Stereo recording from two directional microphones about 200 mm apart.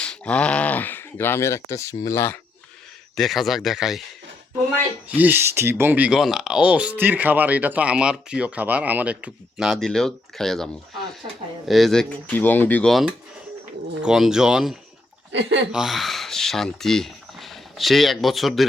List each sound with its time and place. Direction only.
0.0 s speech: 5° left (ahead or behind)
3.2 s speech: centre (ahead or behind)
5.0 s speech: 10° right (ahead or behind)
11.7 s speech: centre (ahead or behind)
15.3 s speech: 65° right (ahead or behind)
15.7 s speech: centre (ahead or behind)